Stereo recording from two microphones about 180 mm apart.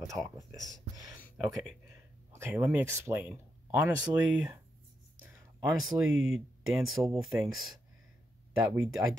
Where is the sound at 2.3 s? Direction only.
15° right (ahead or behind).